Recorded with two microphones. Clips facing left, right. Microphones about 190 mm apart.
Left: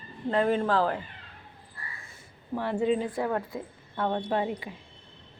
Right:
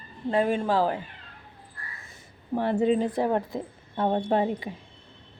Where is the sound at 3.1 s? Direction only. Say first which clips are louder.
Right 4 dB; 25° right (ahead or behind).